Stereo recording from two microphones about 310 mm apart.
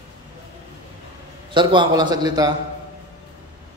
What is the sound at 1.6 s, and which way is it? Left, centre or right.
Speech, centre.